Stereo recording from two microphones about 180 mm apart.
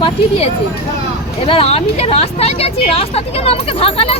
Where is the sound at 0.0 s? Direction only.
35° left (ahead or behind).